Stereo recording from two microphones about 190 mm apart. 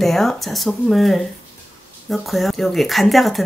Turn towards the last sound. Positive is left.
turn(degrees=0)  # may be behind; listen again after turning